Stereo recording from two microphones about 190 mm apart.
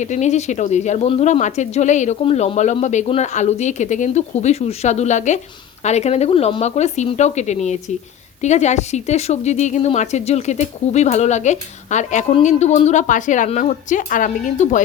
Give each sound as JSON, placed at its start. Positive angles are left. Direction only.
{"t": 0.0, "sound": "a woman's voice", "side_deg": 40}